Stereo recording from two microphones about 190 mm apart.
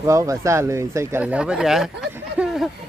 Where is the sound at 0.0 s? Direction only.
15° right (ahead or behind).